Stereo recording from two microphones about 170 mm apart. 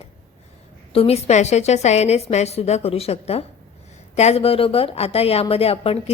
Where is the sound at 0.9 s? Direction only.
35° left (ahead or behind).